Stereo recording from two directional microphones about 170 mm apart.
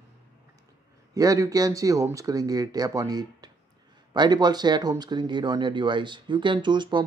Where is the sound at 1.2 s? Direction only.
20° right (ahead or behind).